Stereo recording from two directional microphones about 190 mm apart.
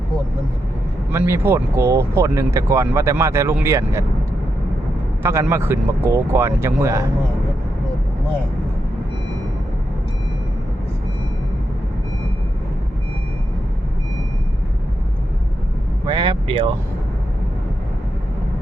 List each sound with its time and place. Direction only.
1.1 s speech: 10° right (ahead or behind)
5.2 s speech: 15° right (ahead or behind)
16.0 s speech: 25° right (ahead or behind)